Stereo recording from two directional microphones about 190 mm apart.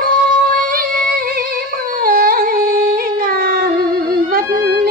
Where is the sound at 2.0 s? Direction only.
50° right (ahead or behind).